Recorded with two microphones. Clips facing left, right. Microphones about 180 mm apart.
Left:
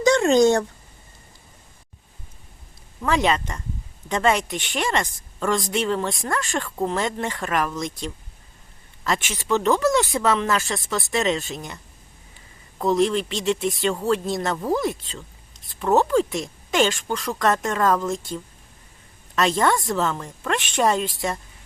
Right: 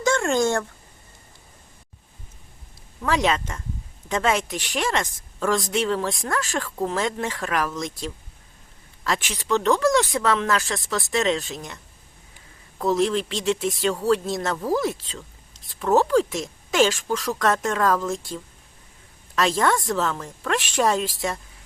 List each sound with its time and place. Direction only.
0.0 s a sound: 20° left (ahead or behind)
3.0 s speech: centre (ahead or behind)
12.8 s speech: centre (ahead or behind)
19.4 s speech: centre (ahead or behind)